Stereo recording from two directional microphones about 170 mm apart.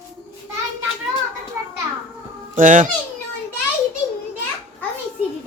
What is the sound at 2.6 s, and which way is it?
Speech, 50° right (ahead or behind).